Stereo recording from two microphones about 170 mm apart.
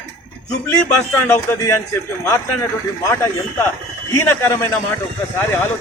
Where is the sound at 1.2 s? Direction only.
15° left (ahead or behind).